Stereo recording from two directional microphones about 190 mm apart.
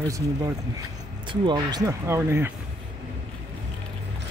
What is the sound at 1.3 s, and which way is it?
Speech, 25° right (ahead or behind).